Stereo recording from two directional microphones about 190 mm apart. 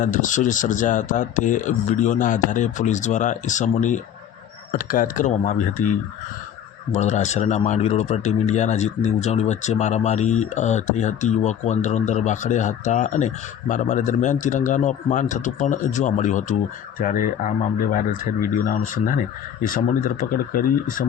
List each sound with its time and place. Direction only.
0.0 s speech: 45° left (ahead or behind)
19.6 s speech: 45° left (ahead or behind)